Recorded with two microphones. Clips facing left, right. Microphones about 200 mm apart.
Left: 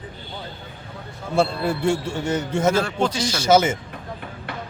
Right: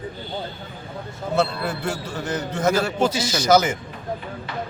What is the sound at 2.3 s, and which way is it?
Speech, 10° left (ahead or behind).